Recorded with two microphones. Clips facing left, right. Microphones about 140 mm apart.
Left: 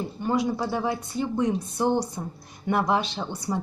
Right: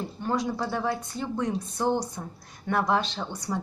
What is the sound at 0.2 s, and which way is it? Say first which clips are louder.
A woman's voice: left 3 dB; 10° left (ahead or behind).